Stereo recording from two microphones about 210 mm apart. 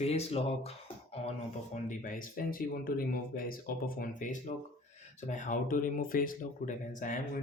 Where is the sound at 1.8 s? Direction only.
40° left (ahead or behind).